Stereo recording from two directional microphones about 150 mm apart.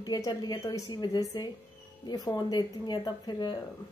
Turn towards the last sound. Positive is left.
turn(degrees=25)  # may be behind; listen again after turning